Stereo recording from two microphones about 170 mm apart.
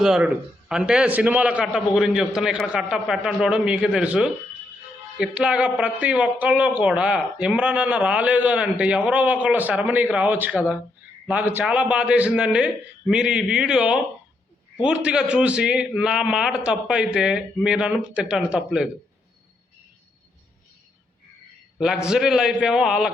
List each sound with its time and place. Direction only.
0.0 s a man's voice: 5° right (ahead or behind)
21.8 s a man's voice: 5° right (ahead or behind)